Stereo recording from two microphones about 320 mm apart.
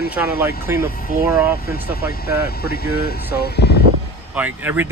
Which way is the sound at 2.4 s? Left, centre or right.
Left.